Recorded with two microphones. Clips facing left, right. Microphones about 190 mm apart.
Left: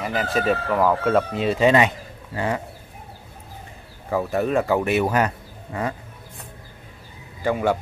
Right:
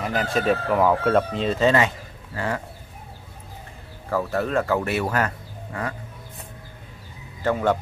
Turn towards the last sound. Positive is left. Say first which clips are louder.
# even
turn(degrees=10)  # may be behind; listen again after turning